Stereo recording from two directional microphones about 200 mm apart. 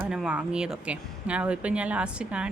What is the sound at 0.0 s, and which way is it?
Speech, 5° right (ahead or behind).